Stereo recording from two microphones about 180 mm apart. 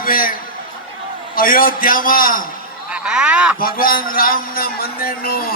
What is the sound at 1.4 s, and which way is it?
A man's voice, 55° left (ahead or behind).